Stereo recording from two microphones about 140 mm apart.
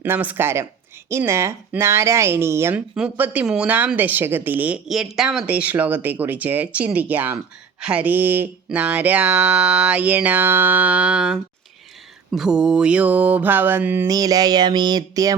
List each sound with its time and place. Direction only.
0.0 s a woman's voice: 10° right (ahead or behind)
2.9 s a woman's voice: 10° right (ahead or behind)
14.1 s speech: 25° right (ahead or behind)